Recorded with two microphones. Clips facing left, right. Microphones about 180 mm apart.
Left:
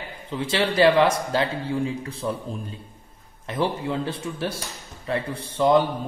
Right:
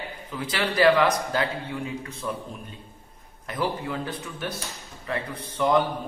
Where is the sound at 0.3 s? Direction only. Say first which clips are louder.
Left 5 dB; 25° left (ahead or behind).